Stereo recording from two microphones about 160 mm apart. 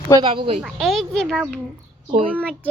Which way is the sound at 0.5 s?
Centre (ahead or behind).